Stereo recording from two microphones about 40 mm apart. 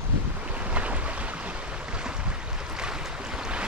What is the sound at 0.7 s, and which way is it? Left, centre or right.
Boat, right.